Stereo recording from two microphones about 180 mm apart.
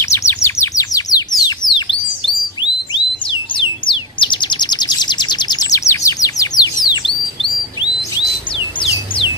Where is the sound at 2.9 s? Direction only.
25° left (ahead or behind).